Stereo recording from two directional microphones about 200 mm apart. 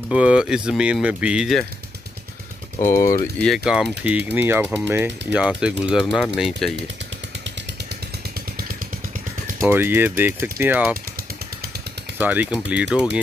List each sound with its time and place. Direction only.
0.1 s speech: 5° right (ahead or behind)
2.8 s speech: 15° left (ahead or behind)
3.4 s speech: centre (ahead or behind)
9.6 s speech: 10° right (ahead or behind)
12.2 s speech: 5° right (ahead or behind)